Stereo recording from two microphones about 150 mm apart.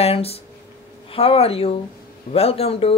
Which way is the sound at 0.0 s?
40° left (ahead or behind).